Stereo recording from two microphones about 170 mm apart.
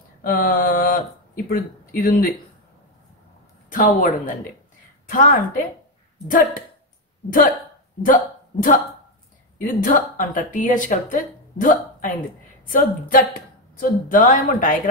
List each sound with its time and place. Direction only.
0.2 s speech: 60° left (ahead or behind)
3.7 s a woman's voice: 50° left (ahead or behind)
8.0 s a woman's voice: 55° left (ahead or behind)